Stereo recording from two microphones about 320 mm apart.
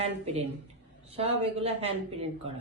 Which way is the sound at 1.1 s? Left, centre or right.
Centre.